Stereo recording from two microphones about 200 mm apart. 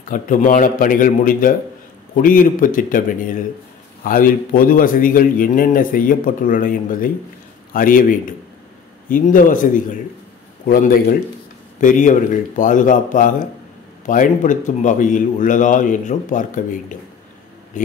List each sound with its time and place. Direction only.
0.1 s a man's voice: 40° left (ahead or behind)
10.7 s a man's voice: 45° left (ahead or behind)
17.8 s a man's voice: 40° left (ahead or behind)